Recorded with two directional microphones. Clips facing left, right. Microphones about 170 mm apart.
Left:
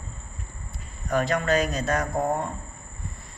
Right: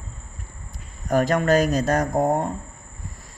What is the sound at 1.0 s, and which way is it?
Speech, 45° right (ahead or behind).